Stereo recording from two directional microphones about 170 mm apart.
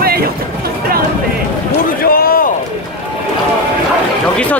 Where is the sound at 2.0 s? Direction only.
60° left (ahead or behind).